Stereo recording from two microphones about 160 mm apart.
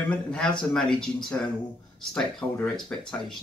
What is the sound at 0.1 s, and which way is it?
Speech, 5° left (ahead or behind).